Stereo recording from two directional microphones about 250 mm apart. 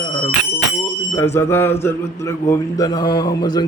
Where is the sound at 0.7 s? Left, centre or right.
Centre.